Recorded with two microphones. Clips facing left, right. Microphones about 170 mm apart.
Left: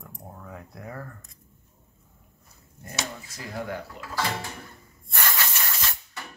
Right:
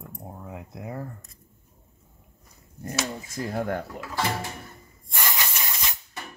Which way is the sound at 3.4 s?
50° right (ahead or behind).